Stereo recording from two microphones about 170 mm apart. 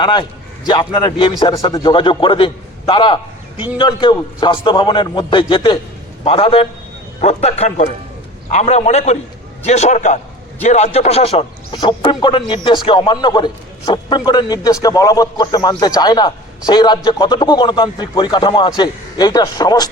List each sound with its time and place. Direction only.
0.0 s a man's voice: 25° left (ahead or behind)